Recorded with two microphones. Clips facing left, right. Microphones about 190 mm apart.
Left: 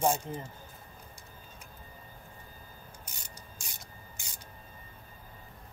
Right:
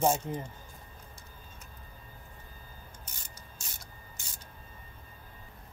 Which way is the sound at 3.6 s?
15° left (ahead or behind).